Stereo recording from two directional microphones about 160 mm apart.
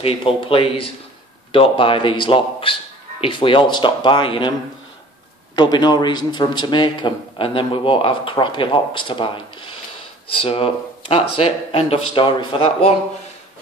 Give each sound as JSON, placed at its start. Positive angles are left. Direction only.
{"t": 0.0, "sound": "a man's voice", "side_deg": 35}
{"t": 5.6, "sound": "a man's voice", "side_deg": 25}